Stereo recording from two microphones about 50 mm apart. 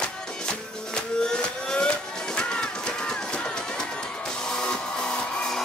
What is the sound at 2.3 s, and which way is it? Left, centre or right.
Music, centre.